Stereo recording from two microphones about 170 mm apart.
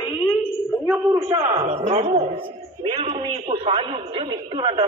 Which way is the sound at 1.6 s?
40° right (ahead or behind).